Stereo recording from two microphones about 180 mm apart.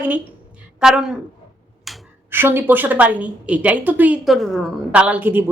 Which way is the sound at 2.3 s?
10° right (ahead or behind).